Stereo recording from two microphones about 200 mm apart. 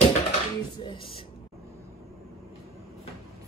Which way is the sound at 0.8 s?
25° left (ahead or behind).